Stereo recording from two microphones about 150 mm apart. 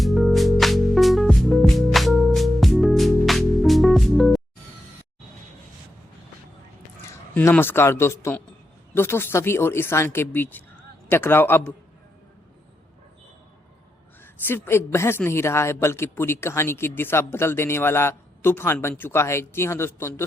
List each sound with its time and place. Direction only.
0.0 s music: centre (ahead or behind)
7.3 s a woman's voice: 15° left (ahead or behind)
14.4 s a woman's voice: 15° left (ahead or behind)